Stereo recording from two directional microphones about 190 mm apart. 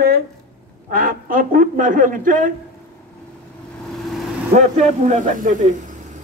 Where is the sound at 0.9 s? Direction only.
50° right (ahead or behind).